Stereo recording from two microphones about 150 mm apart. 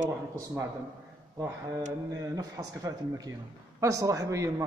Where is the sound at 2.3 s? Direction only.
25° right (ahead or behind).